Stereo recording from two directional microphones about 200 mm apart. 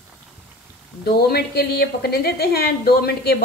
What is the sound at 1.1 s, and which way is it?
A woman's voice, 50° left (ahead or behind).